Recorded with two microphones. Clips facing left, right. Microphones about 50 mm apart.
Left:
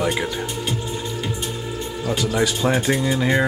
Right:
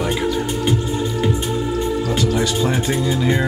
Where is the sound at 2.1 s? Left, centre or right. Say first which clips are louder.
Right 2 dB; centre.